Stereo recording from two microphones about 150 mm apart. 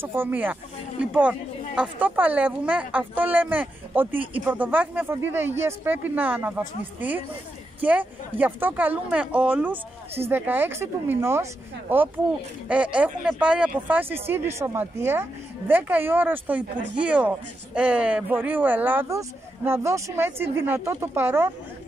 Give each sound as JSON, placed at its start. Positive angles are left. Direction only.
{"t": 0.0, "sound": "speech", "side_deg": -15}
{"t": 1.8, "sound": "speech", "side_deg": -10}